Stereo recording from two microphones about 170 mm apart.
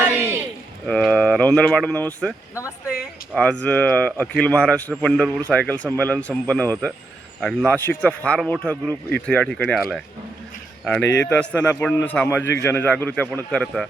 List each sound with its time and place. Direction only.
0.0 s a sound: 10° right (ahead or behind)
0.9 s a man's voice: 5° left (ahead or behind)
11.0 s a man's voice: 90° left
11.3 s a man's voice: 10° left (ahead or behind)